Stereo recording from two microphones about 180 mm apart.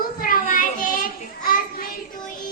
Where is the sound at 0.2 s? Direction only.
50° left (ahead or behind).